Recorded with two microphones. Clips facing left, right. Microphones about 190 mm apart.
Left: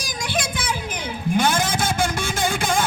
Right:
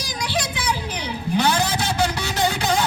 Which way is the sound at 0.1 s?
50° left (ahead or behind).